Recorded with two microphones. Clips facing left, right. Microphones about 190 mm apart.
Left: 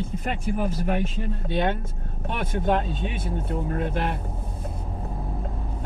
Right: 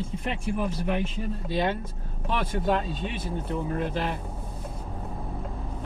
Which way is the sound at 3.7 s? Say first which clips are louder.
Left 2 dB; 55° left (ahead or behind).